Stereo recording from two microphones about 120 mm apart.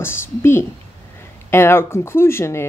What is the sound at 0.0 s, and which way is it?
Speech, 20° left (ahead or behind).